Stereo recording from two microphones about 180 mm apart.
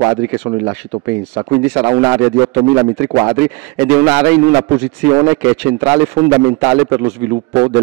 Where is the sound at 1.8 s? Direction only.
25° right (ahead or behind).